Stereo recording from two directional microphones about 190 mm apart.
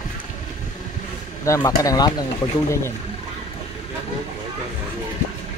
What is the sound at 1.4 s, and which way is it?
Speech, 15° left (ahead or behind).